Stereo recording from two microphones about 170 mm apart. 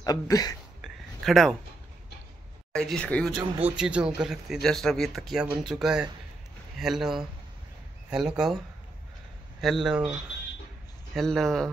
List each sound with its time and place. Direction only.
0.0 s speech: 20° left (ahead or behind)
0.8 s a sound: centre (ahead or behind)
2.7 s speech: 5° left (ahead or behind)
9.6 s speech: centre (ahead or behind)
11.1 s speech: centre (ahead or behind)